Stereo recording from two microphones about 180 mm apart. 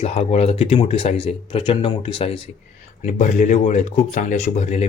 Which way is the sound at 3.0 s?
40° left (ahead or behind).